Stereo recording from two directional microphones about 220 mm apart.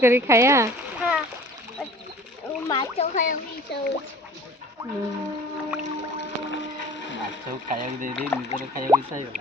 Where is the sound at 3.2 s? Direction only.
40° left (ahead or behind).